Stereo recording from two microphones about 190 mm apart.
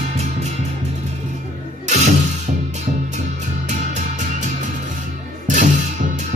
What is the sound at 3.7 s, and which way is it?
Music, 40° right (ahead or behind).